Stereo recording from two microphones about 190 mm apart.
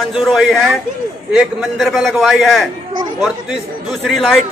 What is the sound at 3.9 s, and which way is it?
Speech, centre (ahead or behind).